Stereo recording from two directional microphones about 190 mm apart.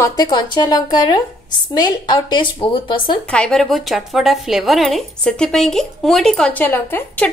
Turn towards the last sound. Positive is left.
turn(degrees=10)  # may be behind; listen again after turning